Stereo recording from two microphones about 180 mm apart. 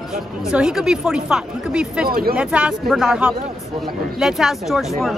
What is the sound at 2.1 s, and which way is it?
Speech, 55° right (ahead or behind).